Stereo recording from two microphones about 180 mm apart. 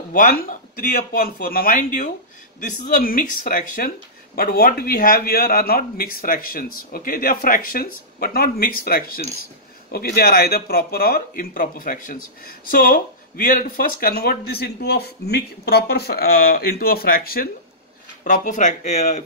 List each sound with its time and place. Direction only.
0.1 s a man's voice: 45° left (ahead or behind)
18.2 s a man's voice: 45° left (ahead or behind)